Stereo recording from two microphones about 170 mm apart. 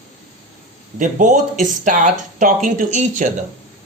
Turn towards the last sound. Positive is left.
turn(degrees=-45)  # may be behind; listen again after turning